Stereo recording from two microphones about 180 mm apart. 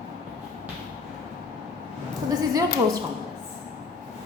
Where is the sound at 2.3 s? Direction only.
20° right (ahead or behind).